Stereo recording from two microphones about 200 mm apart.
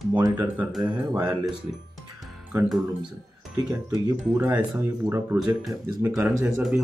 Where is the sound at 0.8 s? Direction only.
20° right (ahead or behind).